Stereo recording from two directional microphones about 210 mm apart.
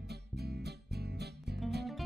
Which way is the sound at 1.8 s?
Centre (ahead or behind).